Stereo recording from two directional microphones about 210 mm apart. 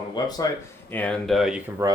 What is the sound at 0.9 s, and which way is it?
Speech, 5° left (ahead or behind).